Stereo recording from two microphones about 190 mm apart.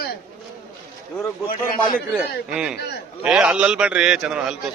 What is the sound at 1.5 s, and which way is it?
Speech, 45° left (ahead or behind).